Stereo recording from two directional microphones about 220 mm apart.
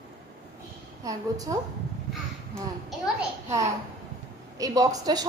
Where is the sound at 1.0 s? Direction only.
15° right (ahead or behind).